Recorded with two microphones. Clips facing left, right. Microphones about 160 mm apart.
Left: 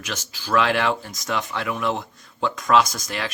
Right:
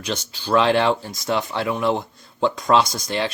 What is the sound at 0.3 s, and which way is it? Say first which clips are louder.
Speech: right 3 dB; 30° right (ahead or behind).